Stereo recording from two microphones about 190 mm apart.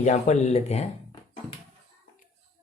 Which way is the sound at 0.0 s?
40° left (ahead or behind).